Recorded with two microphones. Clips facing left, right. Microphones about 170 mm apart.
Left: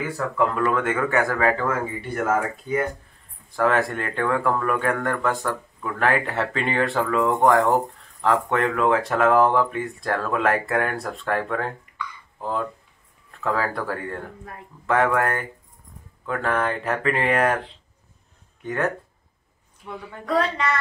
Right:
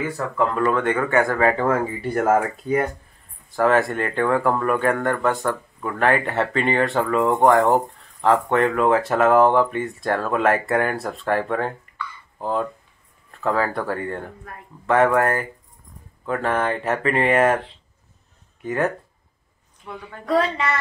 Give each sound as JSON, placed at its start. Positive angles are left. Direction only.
{"t": 0.6, "sound": "speech", "side_deg": 5}
{"t": 1.6, "sound": "speech", "side_deg": -35}
{"t": 3.4, "sound": "speech", "side_deg": 0}
{"t": 13.4, "sound": "speech", "side_deg": 0}